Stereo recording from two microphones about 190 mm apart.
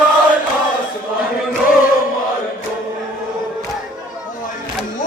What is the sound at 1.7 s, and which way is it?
Chant, 45° left (ahead or behind).